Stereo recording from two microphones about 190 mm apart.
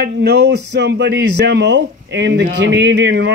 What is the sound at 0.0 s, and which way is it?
Speech, 60° right (ahead or behind).